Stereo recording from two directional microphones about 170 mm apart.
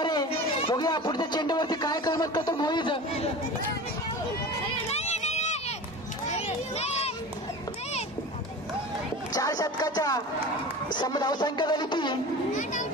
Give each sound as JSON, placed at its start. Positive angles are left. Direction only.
{"t": 0.0, "sound": "speech", "side_deg": 25}
{"t": 4.6, "sound": "run", "side_deg": 40}
{"t": 6.3, "sound": "children playing", "side_deg": 40}
{"t": 9.3, "sound": "speech", "side_deg": 20}